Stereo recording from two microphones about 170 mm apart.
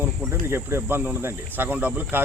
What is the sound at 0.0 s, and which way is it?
Speech, 15° right (ahead or behind).